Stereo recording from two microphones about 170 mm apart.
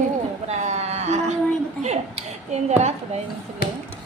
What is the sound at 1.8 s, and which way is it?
A woman's voice, 40° right (ahead or behind).